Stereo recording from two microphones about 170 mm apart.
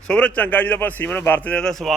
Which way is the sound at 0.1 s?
10° left (ahead or behind).